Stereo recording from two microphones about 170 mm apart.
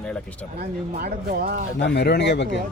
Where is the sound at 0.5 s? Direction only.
65° right (ahead or behind).